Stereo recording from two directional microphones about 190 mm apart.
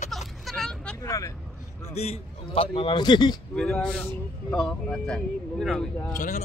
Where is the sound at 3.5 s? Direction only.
5° left (ahead or behind).